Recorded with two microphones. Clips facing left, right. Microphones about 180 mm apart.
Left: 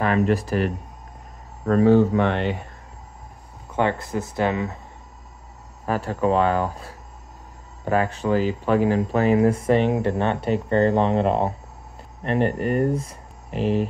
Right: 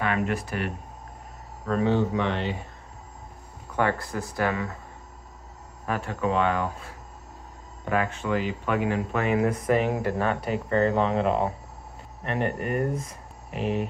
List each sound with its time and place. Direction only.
0.0 s speech: 35° left (ahead or behind); by 2.5 s 55° left (ahead or behind)
3.7 s speech: 20° left (ahead or behind)
5.9 s speech: 35° left (ahead or behind)